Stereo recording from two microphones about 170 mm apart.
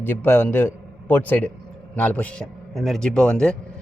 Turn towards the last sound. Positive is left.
turn(degrees=5)  # may be behind; listen again after turning